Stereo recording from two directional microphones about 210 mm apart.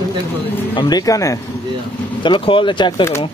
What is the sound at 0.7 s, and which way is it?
Speech, 20° left (ahead or behind).